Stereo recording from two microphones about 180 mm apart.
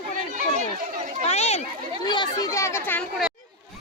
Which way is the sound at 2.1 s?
20° left (ahead or behind).